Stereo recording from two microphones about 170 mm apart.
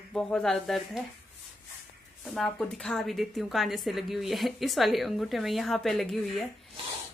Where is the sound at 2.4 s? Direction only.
5° left (ahead or behind).